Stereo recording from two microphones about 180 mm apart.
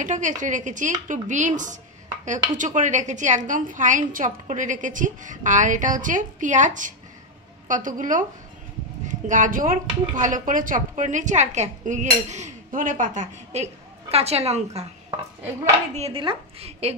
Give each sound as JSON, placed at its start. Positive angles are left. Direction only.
{"t": 0.0, "sound": "speech", "side_deg": -45}
{"t": 15.9, "sound": "a woman's voice", "side_deg": -35}